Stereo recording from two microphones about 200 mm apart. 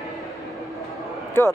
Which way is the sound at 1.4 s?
10° left (ahead or behind).